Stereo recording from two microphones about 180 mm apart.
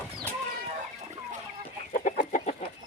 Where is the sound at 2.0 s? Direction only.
45° left (ahead or behind).